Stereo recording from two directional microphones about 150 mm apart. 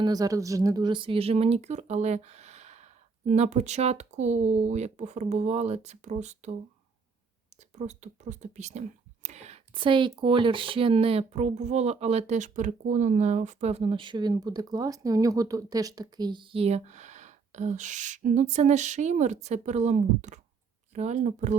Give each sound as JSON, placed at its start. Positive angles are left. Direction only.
{"t": 0.0, "sound": "speech", "side_deg": -25}
{"t": 7.8, "sound": "speech", "side_deg": -50}